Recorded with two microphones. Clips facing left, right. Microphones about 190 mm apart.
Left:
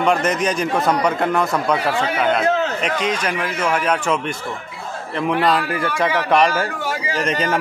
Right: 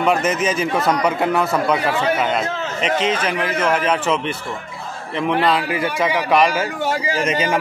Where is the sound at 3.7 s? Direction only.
5° right (ahead or behind).